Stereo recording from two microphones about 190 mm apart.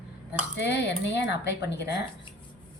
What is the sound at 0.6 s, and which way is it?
A woman's voice, 65° left (ahead or behind).